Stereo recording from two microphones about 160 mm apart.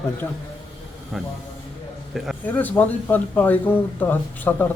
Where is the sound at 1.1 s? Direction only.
Centre (ahead or behind).